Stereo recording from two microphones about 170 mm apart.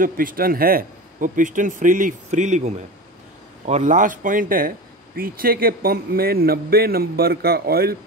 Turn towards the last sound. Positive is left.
turn(degrees=-65)  # may be behind; listen again after turning